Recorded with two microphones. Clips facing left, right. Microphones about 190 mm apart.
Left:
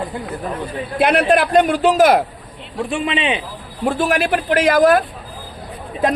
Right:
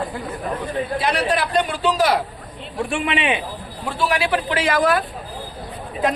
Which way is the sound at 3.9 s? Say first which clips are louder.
Left 3 dB; 50° left (ahead or behind).